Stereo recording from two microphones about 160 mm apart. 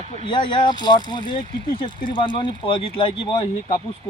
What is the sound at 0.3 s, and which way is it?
Speech, 30° left (ahead or behind).